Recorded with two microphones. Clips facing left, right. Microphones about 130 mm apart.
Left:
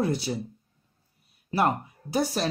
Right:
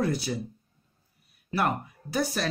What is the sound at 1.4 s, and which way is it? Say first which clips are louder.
Speech: left 3 dB; 25° left (ahead or behind).